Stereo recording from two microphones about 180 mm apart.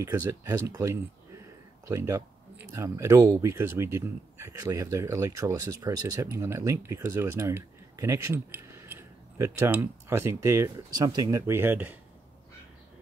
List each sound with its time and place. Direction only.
0.0 s speech: 15° right (ahead or behind)